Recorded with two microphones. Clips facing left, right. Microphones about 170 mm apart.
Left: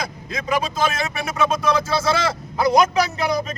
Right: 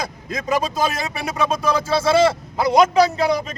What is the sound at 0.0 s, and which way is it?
A man's voice, 40° right (ahead or behind).